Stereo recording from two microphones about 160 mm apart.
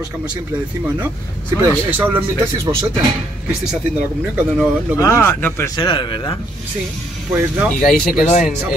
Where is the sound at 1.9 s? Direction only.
10° right (ahead or behind).